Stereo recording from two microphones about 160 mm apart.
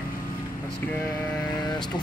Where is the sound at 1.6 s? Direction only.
25° left (ahead or behind).